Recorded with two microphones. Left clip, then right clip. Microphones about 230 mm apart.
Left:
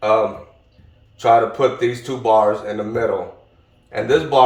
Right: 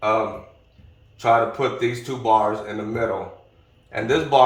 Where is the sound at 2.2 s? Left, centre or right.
Centre.